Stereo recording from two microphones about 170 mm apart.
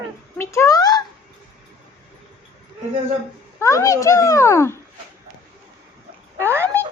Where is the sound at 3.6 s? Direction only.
20° left (ahead or behind).